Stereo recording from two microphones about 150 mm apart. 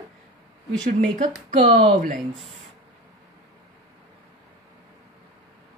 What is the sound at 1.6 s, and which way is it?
Speech, 40° right (ahead or behind).